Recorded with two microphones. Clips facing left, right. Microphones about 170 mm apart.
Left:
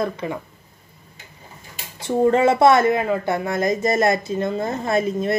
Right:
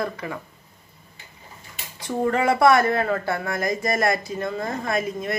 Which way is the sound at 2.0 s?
25° left (ahead or behind).